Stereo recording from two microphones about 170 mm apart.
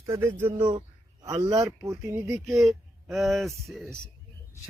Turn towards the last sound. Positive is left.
turn(degrees=0)  # may be behind; listen again after turning